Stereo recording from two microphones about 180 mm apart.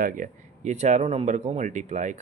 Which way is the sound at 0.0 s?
50° right (ahead or behind).